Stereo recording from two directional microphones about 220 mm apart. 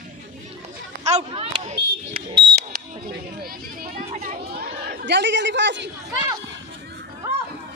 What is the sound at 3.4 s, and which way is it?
Children playing, 40° right (ahead or behind).